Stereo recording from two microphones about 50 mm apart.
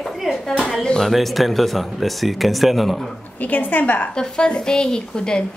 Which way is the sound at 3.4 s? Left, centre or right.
Left.